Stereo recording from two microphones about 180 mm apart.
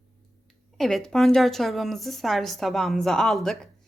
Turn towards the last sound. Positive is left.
turn(degrees=0)  # may be behind; listen again after turning